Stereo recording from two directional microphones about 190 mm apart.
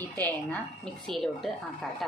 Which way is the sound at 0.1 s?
10° left (ahead or behind).